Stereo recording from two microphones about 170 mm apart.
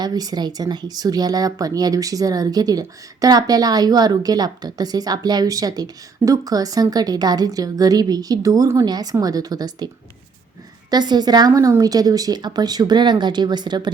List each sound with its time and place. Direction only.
0.0 s speech: 25° right (ahead or behind)
10.9 s speech: 25° right (ahead or behind)